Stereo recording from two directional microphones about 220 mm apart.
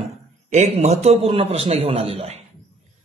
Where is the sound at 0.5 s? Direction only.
30° right (ahead or behind).